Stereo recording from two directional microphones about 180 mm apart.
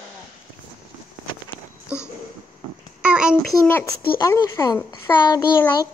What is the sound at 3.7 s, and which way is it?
A child's voice, 10° left (ahead or behind).